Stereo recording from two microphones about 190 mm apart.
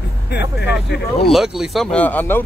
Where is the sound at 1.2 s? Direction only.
Centre (ahead or behind).